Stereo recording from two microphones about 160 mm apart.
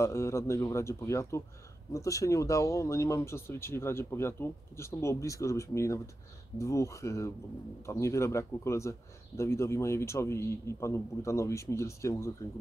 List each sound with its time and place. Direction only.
0.0 s a man's voice: 15° left (ahead or behind)